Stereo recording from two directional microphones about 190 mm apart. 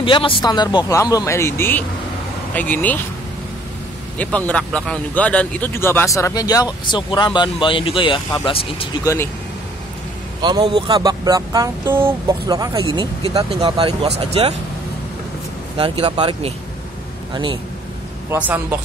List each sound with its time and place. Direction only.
0.0 s speech: 25° left (ahead or behind); by 3.0 s 10° left (ahead or behind)
4.2 s speech: 5° left (ahead or behind); by 9.0 s 25° left (ahead or behind)
9.0 s speech: 15° left (ahead or behind)
10.4 s speech: 25° right (ahead or behind)
15.8 s speech: 25° right (ahead or behind)
18.3 s speech: 10° right (ahead or behind)